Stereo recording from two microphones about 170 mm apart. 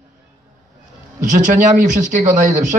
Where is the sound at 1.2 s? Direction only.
45° right (ahead or behind).